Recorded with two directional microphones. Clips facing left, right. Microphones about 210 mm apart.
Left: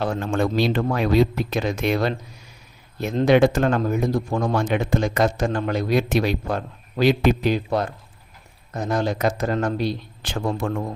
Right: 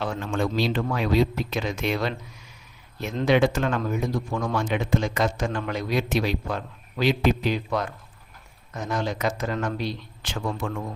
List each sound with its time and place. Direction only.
0.0 s speech: 45° left (ahead or behind)
1.5 s speech: 40° left (ahead or behind)
7.5 s speech: 35° left (ahead or behind)